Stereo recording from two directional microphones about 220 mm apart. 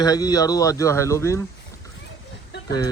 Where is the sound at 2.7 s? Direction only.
20° left (ahead or behind).